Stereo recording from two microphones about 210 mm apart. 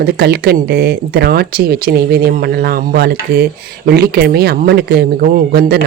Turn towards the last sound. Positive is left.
turn(degrees=-50)  # may be behind; listen again after turning